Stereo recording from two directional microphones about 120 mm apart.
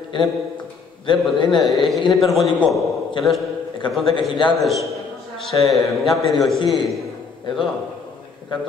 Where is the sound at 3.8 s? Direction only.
40° left (ahead or behind).